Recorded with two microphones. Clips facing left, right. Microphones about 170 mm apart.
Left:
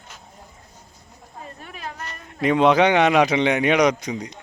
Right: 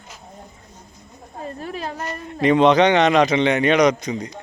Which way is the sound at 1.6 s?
35° right (ahead or behind).